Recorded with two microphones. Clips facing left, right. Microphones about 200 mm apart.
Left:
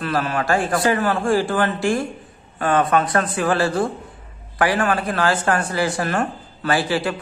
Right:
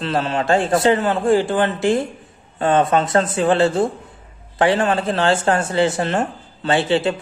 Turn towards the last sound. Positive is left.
turn(degrees=-25)  # may be behind; listen again after turning